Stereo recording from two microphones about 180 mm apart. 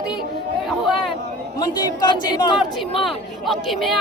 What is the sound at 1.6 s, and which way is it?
Speech, 25° left (ahead or behind).